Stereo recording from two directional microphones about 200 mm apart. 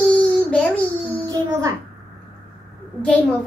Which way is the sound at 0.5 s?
5° left (ahead or behind).